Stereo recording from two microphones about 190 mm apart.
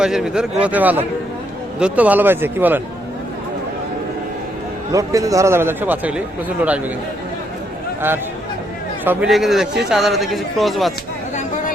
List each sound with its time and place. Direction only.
0.0 s a man's voice: 5° right (ahead or behind)
4.9 s a man's voice: 15° right (ahead or behind)
9.0 s speech: 5° right (ahead or behind)